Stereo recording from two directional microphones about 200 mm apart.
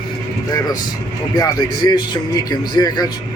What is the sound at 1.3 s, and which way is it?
A man's voice, 20° left (ahead or behind).